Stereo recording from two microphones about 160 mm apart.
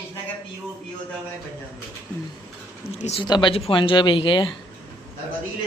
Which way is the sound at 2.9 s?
40° left (ahead or behind).